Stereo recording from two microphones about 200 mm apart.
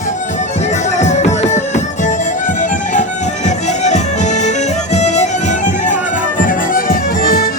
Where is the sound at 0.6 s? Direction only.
35° left (ahead or behind).